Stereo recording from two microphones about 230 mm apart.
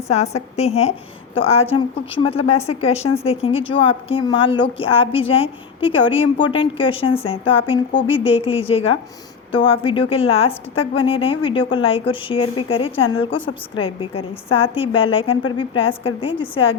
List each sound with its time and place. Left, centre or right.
0.1 s a woman's voice: left